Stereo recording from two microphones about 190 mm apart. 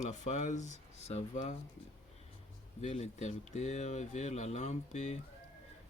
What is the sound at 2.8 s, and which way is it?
Speech, 35° left (ahead or behind).